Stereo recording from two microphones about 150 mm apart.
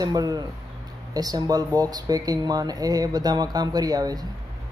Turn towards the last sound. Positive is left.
turn(degrees=-25)  # may be behind; listen again after turning